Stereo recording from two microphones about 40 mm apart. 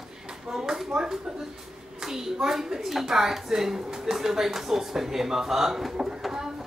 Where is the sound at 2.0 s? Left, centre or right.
Centre.